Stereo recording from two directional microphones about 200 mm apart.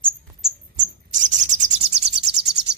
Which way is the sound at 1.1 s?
40° right (ahead or behind).